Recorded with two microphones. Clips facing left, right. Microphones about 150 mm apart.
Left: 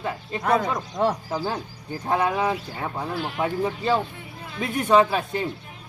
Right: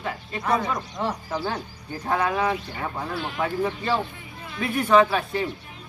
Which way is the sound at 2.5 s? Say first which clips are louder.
Even; 10° left (ahead or behind).